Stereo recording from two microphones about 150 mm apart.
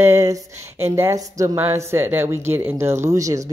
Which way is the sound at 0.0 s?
20° right (ahead or behind).